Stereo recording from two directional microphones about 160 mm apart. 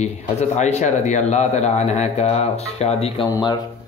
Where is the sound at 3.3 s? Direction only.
25° left (ahead or behind).